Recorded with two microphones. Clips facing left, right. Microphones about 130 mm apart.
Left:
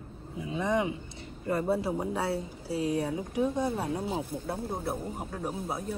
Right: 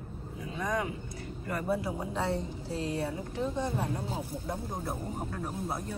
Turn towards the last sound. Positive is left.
turn(degrees=10)  # may be behind; listen again after turning